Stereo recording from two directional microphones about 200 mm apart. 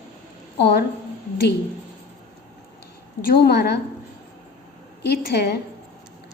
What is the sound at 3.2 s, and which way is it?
Speech, 55° left (ahead or behind).